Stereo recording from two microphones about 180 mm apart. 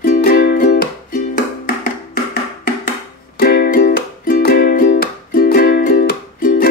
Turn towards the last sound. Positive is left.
turn(degrees=50)  # may be behind; listen again after turning